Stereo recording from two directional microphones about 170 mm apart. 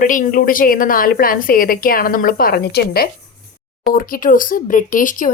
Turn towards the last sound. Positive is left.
turn(degrees=50)  # may be behind; listen again after turning